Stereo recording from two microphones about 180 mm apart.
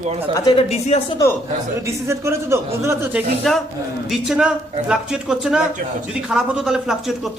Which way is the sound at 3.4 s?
5° left (ahead or behind).